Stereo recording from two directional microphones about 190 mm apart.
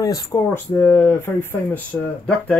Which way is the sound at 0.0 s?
20° left (ahead or behind).